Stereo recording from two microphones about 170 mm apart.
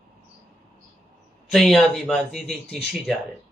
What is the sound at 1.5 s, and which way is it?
A man's voice, centre (ahead or behind).